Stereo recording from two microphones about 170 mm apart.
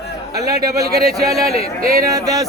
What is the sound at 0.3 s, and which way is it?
Speech, 20° right (ahead or behind).